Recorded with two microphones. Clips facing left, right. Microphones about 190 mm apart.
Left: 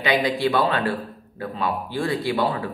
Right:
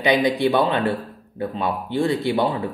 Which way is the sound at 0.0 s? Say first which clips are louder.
Right 3 dB; 20° right (ahead or behind).